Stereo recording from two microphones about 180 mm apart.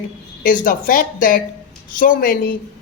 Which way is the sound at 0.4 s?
50° left (ahead or behind).